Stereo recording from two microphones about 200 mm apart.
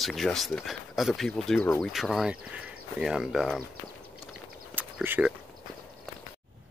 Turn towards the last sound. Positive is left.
turn(degrees=-10)  # may be behind; listen again after turning